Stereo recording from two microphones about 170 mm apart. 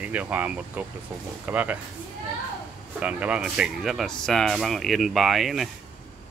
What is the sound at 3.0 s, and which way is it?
Speech, 10° right (ahead or behind).